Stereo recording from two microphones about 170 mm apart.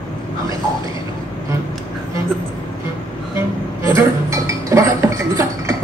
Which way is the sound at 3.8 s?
15° right (ahead or behind).